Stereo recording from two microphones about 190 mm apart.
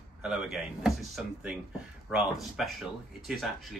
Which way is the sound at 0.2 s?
5° right (ahead or behind).